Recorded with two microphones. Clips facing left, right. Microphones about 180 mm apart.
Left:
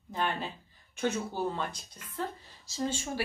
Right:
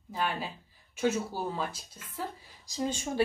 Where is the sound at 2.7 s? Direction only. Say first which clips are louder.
Right 1 dB; 15° right (ahead or behind).